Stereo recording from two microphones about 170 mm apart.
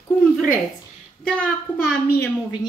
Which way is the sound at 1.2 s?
5° left (ahead or behind).